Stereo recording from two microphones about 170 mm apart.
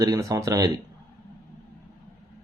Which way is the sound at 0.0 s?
20° right (ahead or behind).